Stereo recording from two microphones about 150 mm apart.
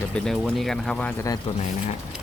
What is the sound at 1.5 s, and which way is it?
Speech, 40° left (ahead or behind).